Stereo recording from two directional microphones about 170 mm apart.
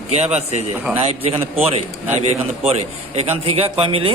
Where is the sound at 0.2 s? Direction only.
40° right (ahead or behind).